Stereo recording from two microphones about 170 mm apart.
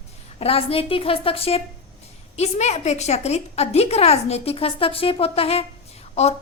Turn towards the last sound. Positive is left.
turn(degrees=40)  # may be behind; listen again after turning